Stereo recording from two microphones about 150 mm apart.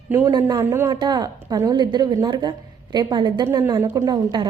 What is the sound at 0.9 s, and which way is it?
A woman's voice, 30° right (ahead or behind).